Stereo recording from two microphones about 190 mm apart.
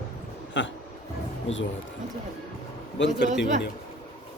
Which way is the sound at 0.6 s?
70° left (ahead or behind).